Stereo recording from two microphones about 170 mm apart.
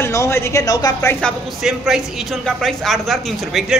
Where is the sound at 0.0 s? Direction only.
15° left (ahead or behind).